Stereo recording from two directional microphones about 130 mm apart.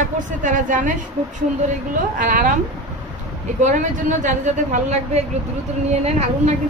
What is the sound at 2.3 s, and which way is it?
Speech, 85° right.